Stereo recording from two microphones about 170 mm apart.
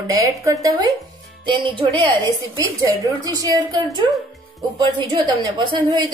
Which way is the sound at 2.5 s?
20° right (ahead or behind).